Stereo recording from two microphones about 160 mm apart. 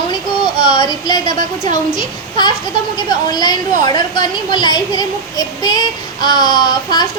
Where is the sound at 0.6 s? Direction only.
25° left (ahead or behind).